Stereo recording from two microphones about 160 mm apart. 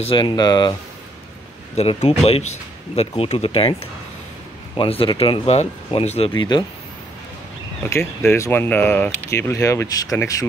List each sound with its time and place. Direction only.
0.0 s speech: 30° left (ahead or behind)
1.8 s speech: 40° left (ahead or behind)
4.7 s speech: 35° left (ahead or behind)
7.9 s speech: 15° left (ahead or behind)